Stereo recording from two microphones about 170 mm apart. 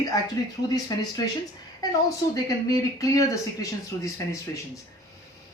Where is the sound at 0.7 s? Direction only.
20° left (ahead or behind).